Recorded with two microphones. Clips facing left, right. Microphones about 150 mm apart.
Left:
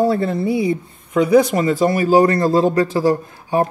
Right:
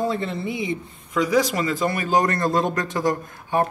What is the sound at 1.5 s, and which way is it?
A man's voice, 35° left (ahead or behind).